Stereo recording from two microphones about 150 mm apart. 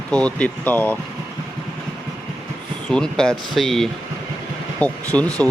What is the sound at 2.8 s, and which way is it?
Speech, 5° left (ahead or behind).